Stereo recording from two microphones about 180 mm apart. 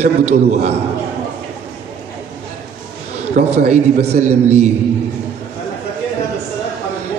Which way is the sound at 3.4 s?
40° right (ahead or behind).